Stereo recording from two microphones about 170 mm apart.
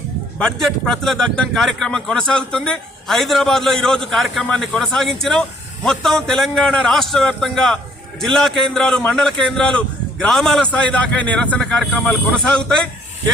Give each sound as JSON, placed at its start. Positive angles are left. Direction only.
{"t": 0.3, "sound": "a man's voice", "side_deg": 5}